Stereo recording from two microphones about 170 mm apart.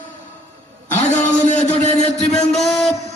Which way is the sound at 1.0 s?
45° left (ahead or behind).